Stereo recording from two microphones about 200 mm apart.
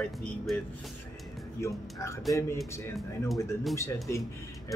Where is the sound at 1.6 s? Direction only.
15° left (ahead or behind).